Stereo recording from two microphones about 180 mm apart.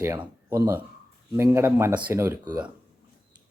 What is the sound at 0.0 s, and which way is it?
Speech, 15° right (ahead or behind).